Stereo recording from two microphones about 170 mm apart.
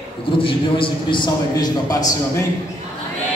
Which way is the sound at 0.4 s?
30° left (ahead or behind).